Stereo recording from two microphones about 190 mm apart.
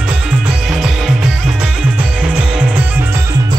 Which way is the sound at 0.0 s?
5° right (ahead or behind).